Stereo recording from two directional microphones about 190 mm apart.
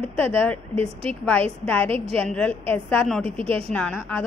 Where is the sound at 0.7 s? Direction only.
30° right (ahead or behind).